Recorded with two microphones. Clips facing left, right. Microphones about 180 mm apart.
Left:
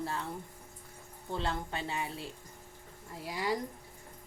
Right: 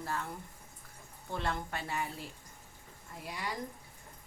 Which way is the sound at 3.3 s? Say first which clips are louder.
Left 6 dB; 30° left (ahead or behind).